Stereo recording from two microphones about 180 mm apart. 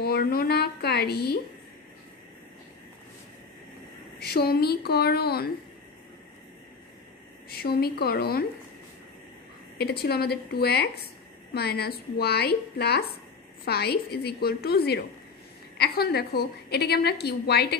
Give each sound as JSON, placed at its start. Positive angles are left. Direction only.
{"t": 0.0, "sound": "a woman's voice", "side_deg": 60}
{"t": 4.2, "sound": "a woman's voice", "side_deg": 60}
{"t": 7.4, "sound": "a woman's voice", "side_deg": 60}
{"t": 9.8, "sound": "a woman's voice", "side_deg": 65}